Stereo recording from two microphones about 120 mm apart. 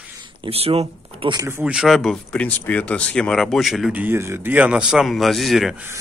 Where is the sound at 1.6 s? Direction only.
5° right (ahead or behind).